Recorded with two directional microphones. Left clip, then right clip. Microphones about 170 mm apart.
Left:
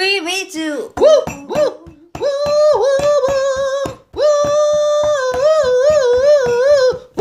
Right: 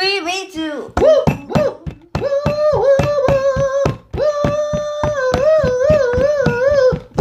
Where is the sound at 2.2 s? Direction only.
60° left (ahead or behind).